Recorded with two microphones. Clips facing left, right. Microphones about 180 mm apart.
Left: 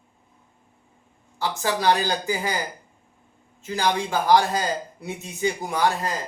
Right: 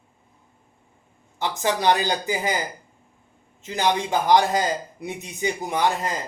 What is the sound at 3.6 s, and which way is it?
Speech, 20° right (ahead or behind).